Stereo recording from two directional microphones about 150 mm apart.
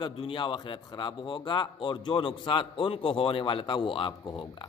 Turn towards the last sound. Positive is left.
turn(degrees=30)  # may be behind; listen again after turning